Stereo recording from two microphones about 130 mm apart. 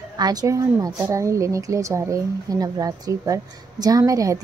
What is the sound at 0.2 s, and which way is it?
A woman's voice, 30° right (ahead or behind).